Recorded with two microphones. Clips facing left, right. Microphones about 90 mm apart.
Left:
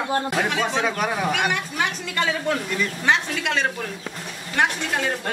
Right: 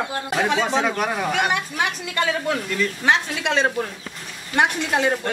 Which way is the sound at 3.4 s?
25° right (ahead or behind).